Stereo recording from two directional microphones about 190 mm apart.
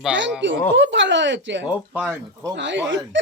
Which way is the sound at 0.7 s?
70° right (ahead or behind).